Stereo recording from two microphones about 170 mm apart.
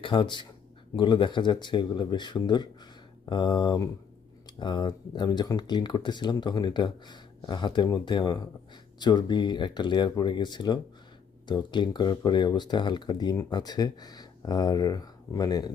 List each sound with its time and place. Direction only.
0.0 s speech: 30° left (ahead or behind)